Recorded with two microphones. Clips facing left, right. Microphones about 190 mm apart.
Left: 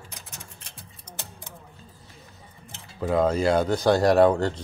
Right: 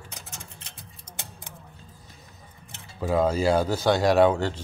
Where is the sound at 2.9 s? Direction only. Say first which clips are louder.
Left 1 dB; 5° right (ahead or behind).